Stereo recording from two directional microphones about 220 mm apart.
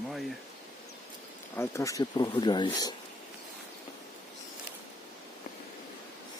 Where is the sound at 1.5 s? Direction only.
15° left (ahead or behind).